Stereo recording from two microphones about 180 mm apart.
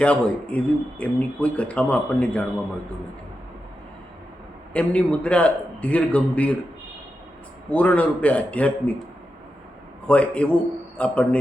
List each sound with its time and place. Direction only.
0.0 s speech: 5° left (ahead or behind)
4.7 s speech: 5° left (ahead or behind)
7.7 s speech: 5° left (ahead or behind)
10.1 s a man's voice: 5° left (ahead or behind)